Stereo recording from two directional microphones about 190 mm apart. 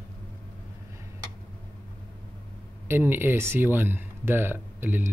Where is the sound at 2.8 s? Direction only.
10° right (ahead or behind).